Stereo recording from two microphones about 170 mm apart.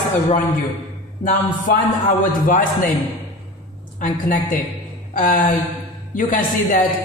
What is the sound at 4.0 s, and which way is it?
Speech, 50° left (ahead or behind).